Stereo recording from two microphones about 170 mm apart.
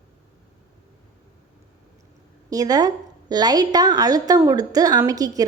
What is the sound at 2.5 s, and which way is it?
A woman's voice, 20° right (ahead or behind).